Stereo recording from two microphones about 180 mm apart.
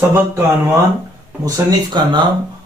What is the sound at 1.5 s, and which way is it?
Speech, 25° right (ahead or behind).